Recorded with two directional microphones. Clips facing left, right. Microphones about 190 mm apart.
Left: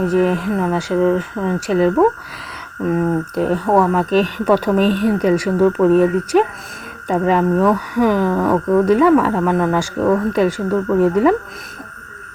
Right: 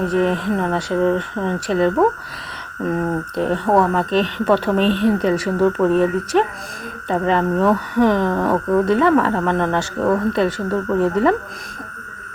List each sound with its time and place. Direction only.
0.1 s speech: 5° left (ahead or behind)
2.9 s speech: 5° left (ahead or behind)